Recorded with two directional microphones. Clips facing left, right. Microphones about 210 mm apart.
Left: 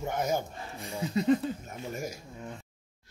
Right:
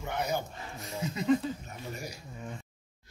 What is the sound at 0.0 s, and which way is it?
Speech, 45° left (ahead or behind).